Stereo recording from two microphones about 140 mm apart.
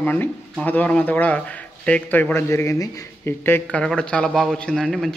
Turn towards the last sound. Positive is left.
turn(degrees=0)  # may be behind; listen again after turning